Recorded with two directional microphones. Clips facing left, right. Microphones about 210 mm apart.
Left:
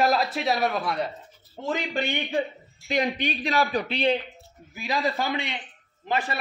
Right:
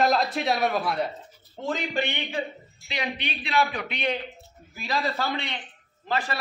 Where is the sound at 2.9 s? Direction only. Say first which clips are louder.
Left 6 dB; 45° left (ahead or behind).